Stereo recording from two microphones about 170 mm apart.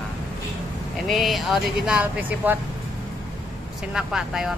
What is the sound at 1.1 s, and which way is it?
Speech, centre (ahead or behind).